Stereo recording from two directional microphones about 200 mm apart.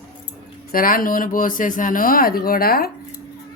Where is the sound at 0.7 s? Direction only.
45° left (ahead or behind).